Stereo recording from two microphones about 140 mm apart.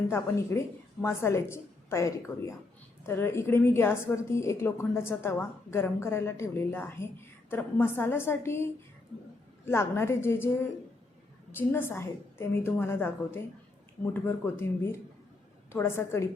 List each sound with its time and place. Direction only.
0.1 s a woman's voice: 20° left (ahead or behind)